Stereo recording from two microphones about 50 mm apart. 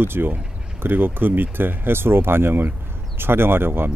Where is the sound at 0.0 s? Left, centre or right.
Right.